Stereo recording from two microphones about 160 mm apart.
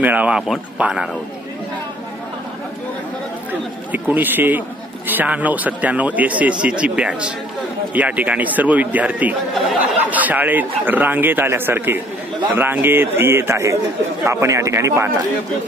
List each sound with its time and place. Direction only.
0.0 s a man's voice: 10° right (ahead or behind)
3.9 s a man's voice: 10° right (ahead or behind)